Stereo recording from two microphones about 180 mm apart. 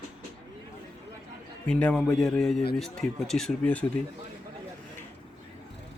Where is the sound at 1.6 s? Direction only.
5° left (ahead or behind).